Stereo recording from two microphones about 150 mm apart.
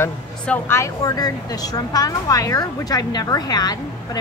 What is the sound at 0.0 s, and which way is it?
Speech, 15° left (ahead or behind).